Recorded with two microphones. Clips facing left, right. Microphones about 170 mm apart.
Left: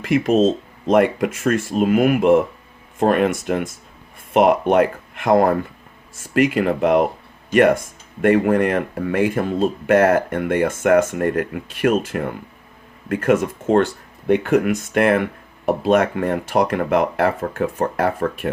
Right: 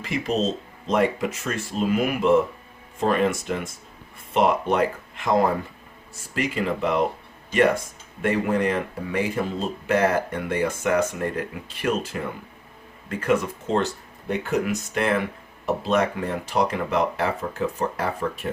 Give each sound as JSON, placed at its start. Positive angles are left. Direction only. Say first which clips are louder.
{"t": 0.0, "sound": "speech", "louder": "left 9 dB", "side_deg": 55}
{"t": 8.2, "sound": "speech", "louder": "left 7 dB", "side_deg": 55}